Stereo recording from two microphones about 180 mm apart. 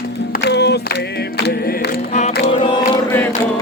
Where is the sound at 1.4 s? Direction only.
70° left (ahead or behind).